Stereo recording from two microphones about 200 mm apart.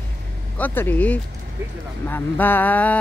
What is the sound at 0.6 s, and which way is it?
A man's voice, 10° left (ahead or behind).